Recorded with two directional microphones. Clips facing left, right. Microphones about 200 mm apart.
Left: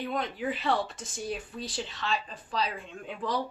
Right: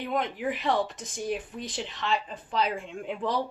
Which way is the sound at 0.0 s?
20° right (ahead or behind).